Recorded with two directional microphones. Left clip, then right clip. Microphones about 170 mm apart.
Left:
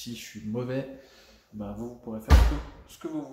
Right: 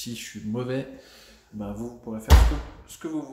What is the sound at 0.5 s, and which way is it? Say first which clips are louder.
Speech: right 2 dB; 10° right (ahead or behind).